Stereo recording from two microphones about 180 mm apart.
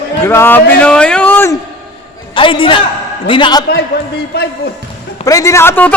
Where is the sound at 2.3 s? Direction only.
30° left (ahead or behind).